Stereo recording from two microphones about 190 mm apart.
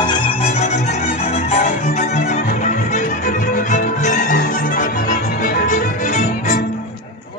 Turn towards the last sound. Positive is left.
turn(degrees=40)  # may be behind; listen again after turning